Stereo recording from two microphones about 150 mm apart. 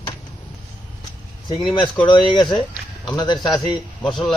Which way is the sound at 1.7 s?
35° left (ahead or behind).